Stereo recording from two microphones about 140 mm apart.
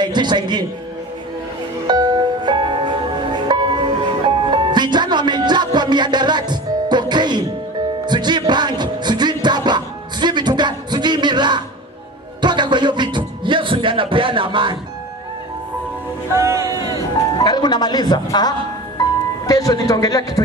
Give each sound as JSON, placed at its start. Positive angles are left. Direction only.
{"t": 0.0, "sound": "speech", "side_deg": -30}
{"t": 1.9, "sound": "music", "side_deg": -30}
{"t": 16.3, "sound": "speech", "side_deg": -20}
{"t": 17.4, "sound": "speech", "side_deg": 30}